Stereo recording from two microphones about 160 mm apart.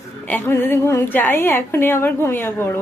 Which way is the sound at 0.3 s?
15° left (ahead or behind).